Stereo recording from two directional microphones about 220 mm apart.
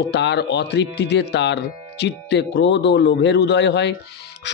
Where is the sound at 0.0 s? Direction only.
50° left (ahead or behind).